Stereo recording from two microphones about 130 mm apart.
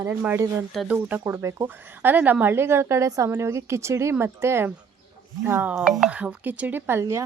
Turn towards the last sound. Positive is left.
turn(degrees=-20)  # may be behind; listen again after turning